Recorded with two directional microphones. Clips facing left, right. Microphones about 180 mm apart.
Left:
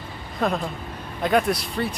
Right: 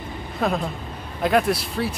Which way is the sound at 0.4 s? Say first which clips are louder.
Even; 5° right (ahead or behind).